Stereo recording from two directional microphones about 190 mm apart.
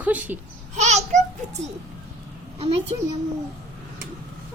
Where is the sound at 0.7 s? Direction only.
40° right (ahead or behind).